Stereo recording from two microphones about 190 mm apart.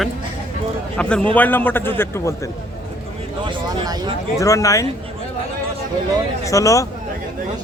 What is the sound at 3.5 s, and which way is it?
Speech, 20° right (ahead or behind).